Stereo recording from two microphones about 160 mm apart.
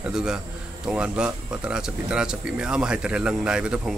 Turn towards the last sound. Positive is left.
turn(degrees=-5)  # may be behind; listen again after turning